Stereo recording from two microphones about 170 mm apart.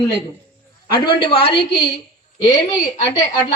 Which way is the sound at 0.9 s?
70° left (ahead or behind).